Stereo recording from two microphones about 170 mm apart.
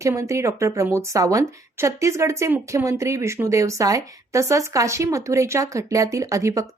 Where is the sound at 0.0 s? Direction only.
20° right (ahead or behind).